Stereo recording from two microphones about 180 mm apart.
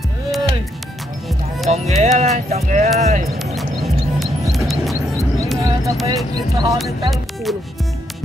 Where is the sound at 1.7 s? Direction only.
40° right (ahead or behind).